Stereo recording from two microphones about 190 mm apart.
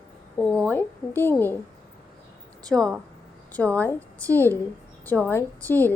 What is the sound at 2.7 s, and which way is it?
A woman's voice, centre (ahead or behind).